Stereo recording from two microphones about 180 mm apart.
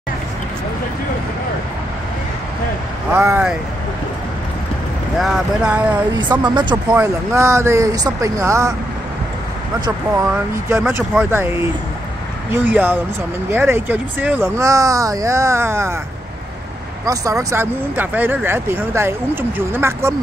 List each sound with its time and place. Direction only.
3.1 s speech: 10° right (ahead or behind)
5.2 s speech: 5° right (ahead or behind)
6.4 s speech: 25° right (ahead or behind)
6.9 s speech: 15° right (ahead or behind)
10.7 s speech: 15° right (ahead or behind)
17.0 s speech: 20° right (ahead or behind)